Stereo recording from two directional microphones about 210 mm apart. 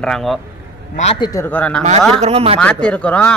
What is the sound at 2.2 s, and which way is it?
Speech, 30° right (ahead or behind).